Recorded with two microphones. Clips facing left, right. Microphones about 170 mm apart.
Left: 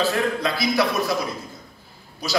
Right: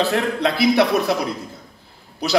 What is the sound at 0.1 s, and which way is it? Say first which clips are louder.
A man's voice: right 3 dB; 65° right (ahead or behind).